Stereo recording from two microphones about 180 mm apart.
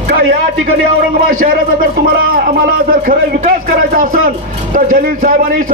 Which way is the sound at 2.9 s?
50° right (ahead or behind).